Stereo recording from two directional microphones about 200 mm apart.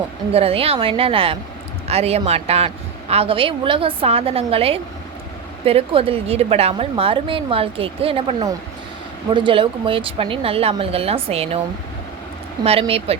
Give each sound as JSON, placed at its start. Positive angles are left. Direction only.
{"t": 0.3, "sound": "a woman's voice", "side_deg": -30}
{"t": 12.8, "sound": "a woman's voice", "side_deg": -30}